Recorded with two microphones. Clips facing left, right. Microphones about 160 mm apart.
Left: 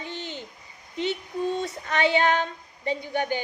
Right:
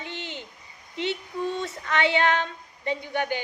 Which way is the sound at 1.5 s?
40° left (ahead or behind).